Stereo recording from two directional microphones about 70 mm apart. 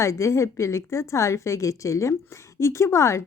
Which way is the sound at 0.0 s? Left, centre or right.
Left.